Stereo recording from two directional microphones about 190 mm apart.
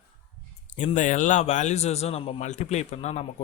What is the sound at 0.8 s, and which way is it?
Speech, 40° left (ahead or behind).